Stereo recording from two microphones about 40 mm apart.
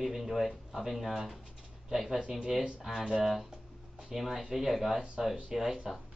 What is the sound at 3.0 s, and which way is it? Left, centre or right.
Speech, centre.